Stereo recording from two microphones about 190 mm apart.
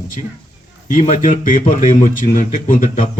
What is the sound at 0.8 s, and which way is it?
Speech, 40° left (ahead or behind).